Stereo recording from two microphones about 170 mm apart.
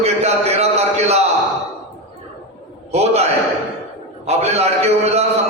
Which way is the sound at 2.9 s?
40° right (ahead or behind).